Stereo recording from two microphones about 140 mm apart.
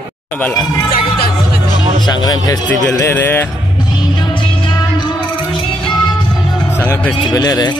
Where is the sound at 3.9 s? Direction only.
35° left (ahead or behind).